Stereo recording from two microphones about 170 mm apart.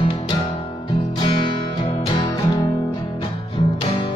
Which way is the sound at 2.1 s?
25° left (ahead or behind).